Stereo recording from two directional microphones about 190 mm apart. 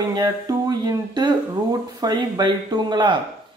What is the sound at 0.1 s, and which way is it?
Speech, 20° right (ahead or behind).